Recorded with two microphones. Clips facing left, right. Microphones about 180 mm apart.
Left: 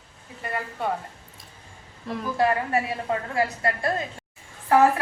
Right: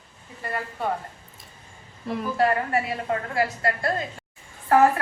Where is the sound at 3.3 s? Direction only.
20° left (ahead or behind).